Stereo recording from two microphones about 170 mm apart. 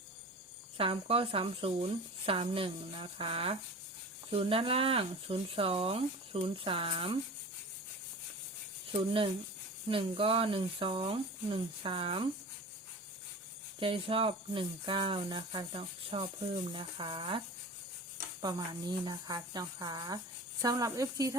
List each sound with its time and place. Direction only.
0.8 s speech: 35° right (ahead or behind)
8.9 s speech: 30° right (ahead or behind)
13.7 s speech: 30° right (ahead or behind)
18.4 s speech: 25° right (ahead or behind)